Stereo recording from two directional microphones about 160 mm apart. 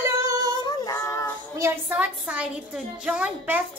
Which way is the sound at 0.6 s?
20° left (ahead or behind).